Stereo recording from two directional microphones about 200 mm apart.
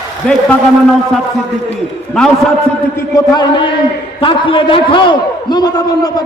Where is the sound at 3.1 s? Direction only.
15° left (ahead or behind).